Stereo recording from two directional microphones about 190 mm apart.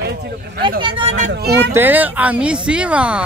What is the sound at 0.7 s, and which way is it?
Speech, 25° right (ahead or behind).